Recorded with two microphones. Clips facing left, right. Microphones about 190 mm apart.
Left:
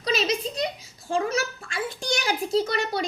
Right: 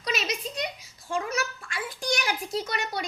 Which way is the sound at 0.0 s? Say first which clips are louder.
Left 6 dB; 30° left (ahead or behind).